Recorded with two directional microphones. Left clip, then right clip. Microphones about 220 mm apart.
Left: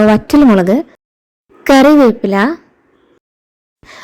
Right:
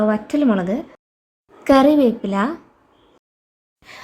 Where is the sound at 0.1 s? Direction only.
35° left (ahead or behind).